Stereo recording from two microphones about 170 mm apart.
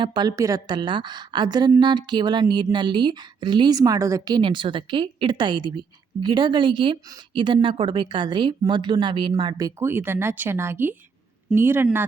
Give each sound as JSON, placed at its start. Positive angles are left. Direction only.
{"t": 0.0, "sound": "a woman's voice", "side_deg": -25}